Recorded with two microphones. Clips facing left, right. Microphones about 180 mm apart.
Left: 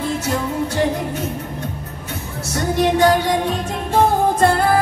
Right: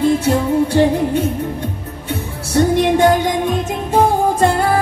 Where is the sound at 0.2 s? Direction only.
30° right (ahead or behind).